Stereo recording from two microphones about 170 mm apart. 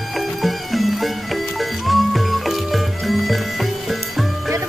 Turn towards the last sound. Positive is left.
turn(degrees=0)  # may be behind; listen again after turning